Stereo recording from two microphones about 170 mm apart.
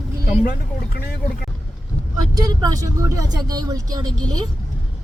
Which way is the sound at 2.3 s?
25° right (ahead or behind).